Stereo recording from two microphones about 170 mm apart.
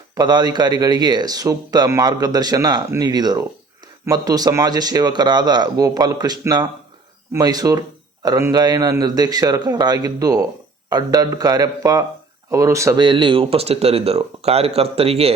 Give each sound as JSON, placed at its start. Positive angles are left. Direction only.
{"t": 0.2, "sound": "speech", "side_deg": -25}